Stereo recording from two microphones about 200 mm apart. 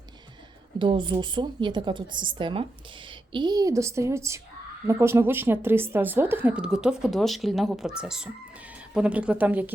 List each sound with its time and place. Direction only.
0.8 s a woman's voice: 25° right (ahead or behind); by 9.7 s 10° right (ahead or behind)